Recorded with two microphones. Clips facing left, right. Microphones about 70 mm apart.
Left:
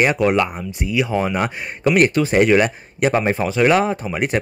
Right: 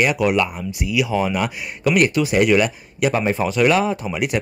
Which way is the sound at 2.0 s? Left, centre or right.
Left.